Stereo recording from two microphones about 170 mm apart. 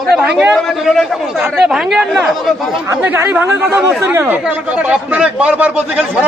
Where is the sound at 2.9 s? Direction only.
15° right (ahead or behind).